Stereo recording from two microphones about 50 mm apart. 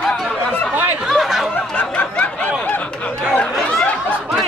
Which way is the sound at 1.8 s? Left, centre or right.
Left.